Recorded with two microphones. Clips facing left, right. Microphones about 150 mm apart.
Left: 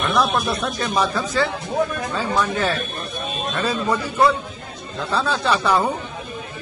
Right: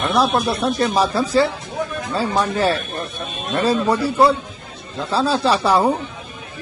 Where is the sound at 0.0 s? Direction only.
30° right (ahead or behind).